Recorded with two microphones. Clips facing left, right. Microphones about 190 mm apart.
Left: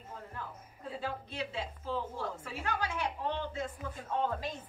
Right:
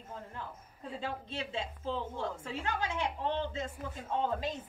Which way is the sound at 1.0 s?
25° right (ahead or behind).